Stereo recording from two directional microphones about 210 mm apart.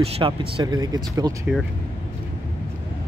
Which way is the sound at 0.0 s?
30° right (ahead or behind).